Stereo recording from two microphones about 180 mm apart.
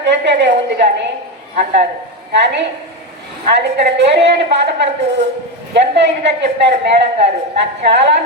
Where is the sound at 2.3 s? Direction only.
75° right (ahead or behind).